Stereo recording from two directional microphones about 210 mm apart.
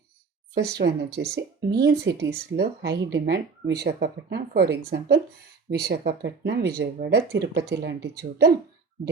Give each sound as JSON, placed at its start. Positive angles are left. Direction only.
{"t": 0.5, "sound": "speech", "side_deg": -50}